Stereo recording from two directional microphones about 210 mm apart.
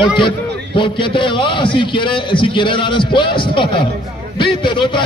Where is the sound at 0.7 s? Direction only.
25° left (ahead or behind).